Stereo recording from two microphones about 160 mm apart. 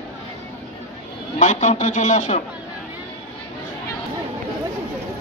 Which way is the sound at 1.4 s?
50° left (ahead or behind).